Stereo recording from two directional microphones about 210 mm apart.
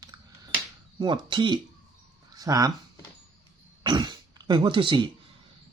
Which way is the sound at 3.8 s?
20° right (ahead or behind).